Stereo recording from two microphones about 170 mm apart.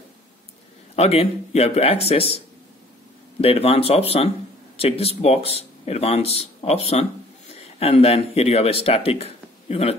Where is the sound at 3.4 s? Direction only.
35° left (ahead or behind).